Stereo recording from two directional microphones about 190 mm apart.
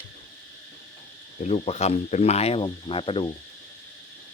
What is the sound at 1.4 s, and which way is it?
Speech, 35° left (ahead or behind).